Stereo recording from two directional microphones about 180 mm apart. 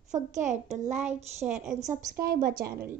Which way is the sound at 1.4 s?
10° right (ahead or behind).